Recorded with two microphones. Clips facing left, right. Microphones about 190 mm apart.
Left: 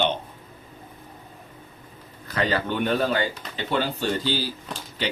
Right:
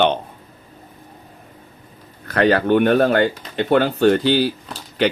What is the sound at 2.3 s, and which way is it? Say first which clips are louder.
Speech: right 10 dB; 60° right (ahead or behind).